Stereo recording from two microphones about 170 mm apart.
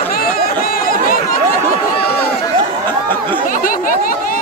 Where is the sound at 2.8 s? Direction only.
10° left (ahead or behind).